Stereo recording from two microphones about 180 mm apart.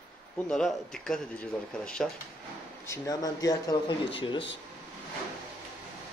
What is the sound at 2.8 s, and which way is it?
Speech, 20° left (ahead or behind).